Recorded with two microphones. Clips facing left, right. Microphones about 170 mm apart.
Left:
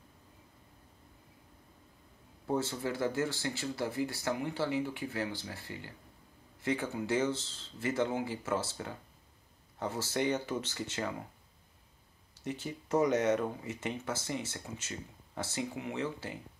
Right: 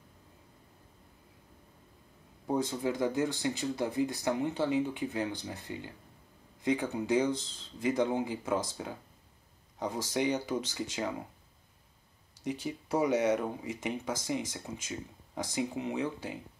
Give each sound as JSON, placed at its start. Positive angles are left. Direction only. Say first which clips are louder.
{"t": 2.4, "sound": "speech", "louder": "right 2 dB", "side_deg": -15}
{"t": 12.4, "sound": "speech", "louder": "right 2 dB", "side_deg": -15}